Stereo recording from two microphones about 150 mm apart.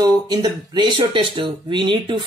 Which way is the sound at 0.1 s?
25° right (ahead or behind).